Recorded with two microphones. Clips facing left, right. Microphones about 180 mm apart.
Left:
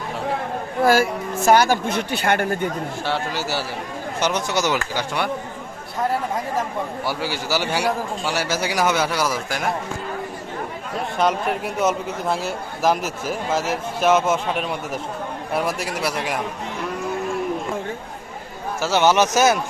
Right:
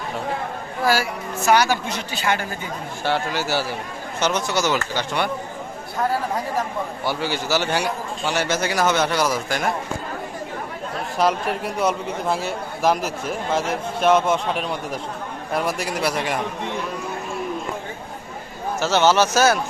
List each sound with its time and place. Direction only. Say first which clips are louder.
1.5 s speech: left 2 dB; 50° left (ahead or behind)
3.1 s speech: right 4 dB; centre (ahead or behind)
4.2 s a man's voice: even; 15° left (ahead or behind)
7.0 s a man's voice: right 1 dB; 5° left (ahead or behind)
11.2 s speech: even; centre (ahead or behind)
18.8 s a man's voice: even; 10° left (ahead or behind)